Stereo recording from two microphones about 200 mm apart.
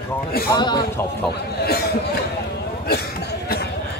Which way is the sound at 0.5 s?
20° left (ahead or behind).